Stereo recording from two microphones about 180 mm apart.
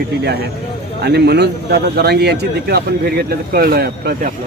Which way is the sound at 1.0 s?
65° right (ahead or behind).